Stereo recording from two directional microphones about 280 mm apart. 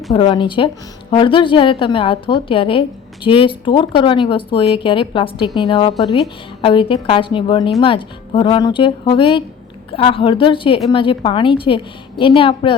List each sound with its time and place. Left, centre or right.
0.1 s a woman's voice: centre